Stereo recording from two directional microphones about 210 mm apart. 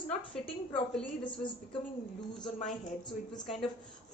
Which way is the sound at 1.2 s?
25° left (ahead or behind).